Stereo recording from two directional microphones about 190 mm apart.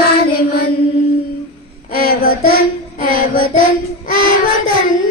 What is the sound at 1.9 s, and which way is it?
Child singing, 50° left (ahead or behind).